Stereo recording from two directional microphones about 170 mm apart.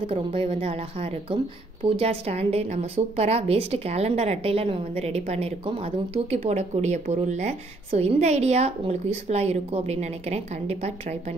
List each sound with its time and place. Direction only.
0.0 s speech: 30° right (ahead or behind)